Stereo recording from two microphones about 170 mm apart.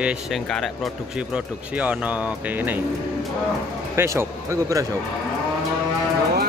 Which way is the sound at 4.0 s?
15° right (ahead or behind).